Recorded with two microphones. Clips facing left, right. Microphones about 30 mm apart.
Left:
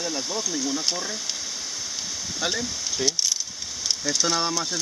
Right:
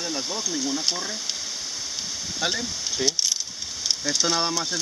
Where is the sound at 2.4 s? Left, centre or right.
Centre.